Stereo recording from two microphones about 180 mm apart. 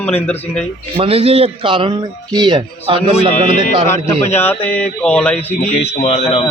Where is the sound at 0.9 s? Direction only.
30° right (ahead or behind).